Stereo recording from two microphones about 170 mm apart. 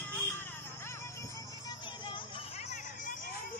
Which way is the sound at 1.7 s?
30° left (ahead or behind).